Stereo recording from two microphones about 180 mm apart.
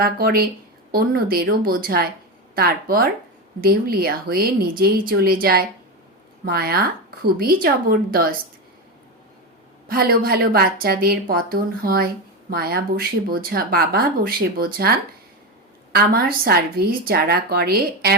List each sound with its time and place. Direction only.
0.0 s speech: 55° right (ahead or behind)
9.9 s speech: 60° right (ahead or behind)